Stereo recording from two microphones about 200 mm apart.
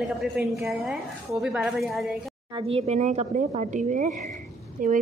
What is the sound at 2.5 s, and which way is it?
Speech, 30° right (ahead or behind).